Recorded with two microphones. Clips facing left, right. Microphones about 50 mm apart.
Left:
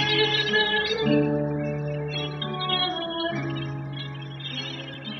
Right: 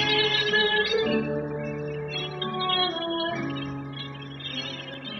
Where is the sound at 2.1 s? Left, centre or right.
Centre.